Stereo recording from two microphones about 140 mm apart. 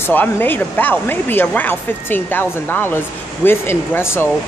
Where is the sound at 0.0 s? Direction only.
15° left (ahead or behind).